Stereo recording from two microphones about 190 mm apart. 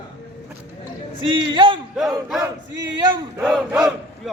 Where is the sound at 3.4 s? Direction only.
Centre (ahead or behind).